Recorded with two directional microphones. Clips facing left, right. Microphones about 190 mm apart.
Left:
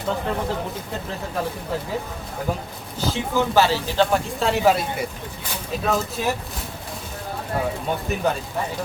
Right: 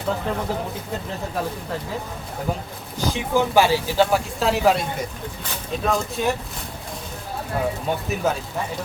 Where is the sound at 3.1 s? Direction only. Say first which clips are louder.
Right 1 dB; 15° right (ahead or behind).